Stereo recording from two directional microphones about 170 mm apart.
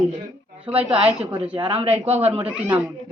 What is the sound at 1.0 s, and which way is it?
Speech, 30° right (ahead or behind).